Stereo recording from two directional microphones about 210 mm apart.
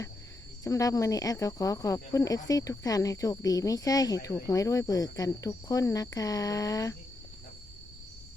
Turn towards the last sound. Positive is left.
turn(degrees=15)  # may be behind; listen again after turning